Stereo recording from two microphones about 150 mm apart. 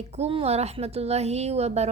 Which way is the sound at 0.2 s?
40° right (ahead or behind).